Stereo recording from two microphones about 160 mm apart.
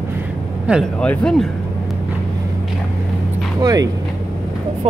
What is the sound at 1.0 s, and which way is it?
Speech, 5° left (ahead or behind).